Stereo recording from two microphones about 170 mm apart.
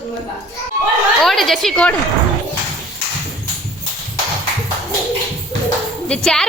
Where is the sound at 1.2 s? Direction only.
Centre (ahead or behind).